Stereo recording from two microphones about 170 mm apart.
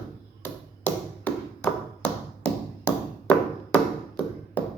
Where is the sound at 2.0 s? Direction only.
10° left (ahead or behind).